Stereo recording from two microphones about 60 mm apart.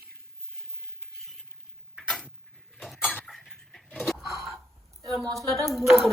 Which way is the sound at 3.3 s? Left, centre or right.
Centre.